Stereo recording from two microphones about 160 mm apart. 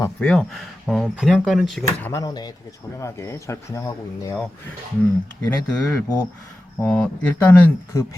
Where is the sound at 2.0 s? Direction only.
20° left (ahead or behind).